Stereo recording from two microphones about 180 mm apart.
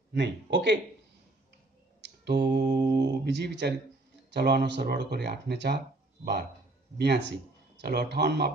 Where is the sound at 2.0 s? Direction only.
70° right (ahead or behind).